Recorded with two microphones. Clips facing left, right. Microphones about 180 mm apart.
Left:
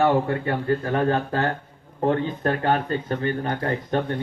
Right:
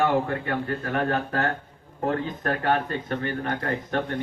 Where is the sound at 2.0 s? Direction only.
30° left (ahead or behind).